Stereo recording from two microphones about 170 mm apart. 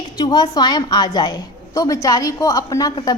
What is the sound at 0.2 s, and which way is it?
A woman's voice, 25° left (ahead or behind).